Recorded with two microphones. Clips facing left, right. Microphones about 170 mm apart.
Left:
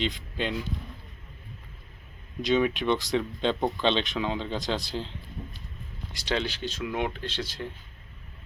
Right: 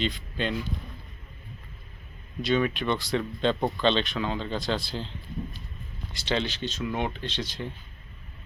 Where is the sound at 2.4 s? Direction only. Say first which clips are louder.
Left 1 dB; 15° left (ahead or behind).